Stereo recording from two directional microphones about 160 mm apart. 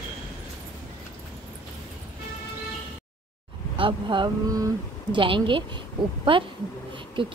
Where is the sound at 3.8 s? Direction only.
30° right (ahead or behind).